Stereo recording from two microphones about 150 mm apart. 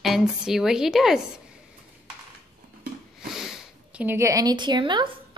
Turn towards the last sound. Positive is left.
turn(degrees=-30)  # may be behind; listen again after turning